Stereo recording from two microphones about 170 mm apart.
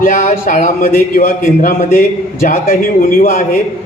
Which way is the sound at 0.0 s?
50° left (ahead or behind).